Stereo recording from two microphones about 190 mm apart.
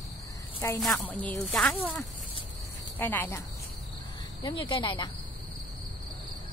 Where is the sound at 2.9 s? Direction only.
10° left (ahead or behind).